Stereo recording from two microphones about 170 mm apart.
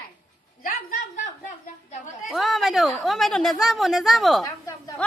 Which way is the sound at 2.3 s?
Centre (ahead or behind).